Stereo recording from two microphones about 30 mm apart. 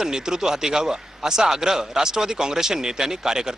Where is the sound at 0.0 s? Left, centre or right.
Right.